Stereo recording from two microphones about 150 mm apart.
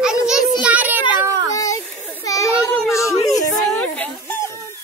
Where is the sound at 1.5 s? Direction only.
25° left (ahead or behind).